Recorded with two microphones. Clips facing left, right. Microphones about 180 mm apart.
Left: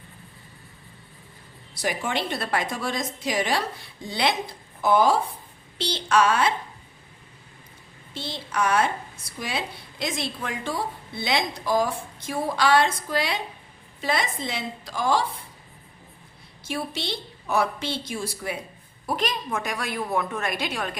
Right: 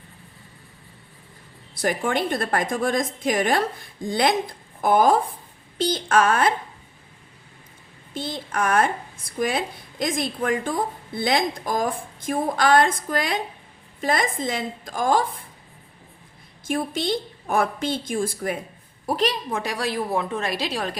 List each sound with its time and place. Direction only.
1.8 s speech: 55° right (ahead or behind)
8.1 s speech: 50° right (ahead or behind)
16.6 s speech: 50° right (ahead or behind)
19.0 s a woman's voice: 35° right (ahead or behind)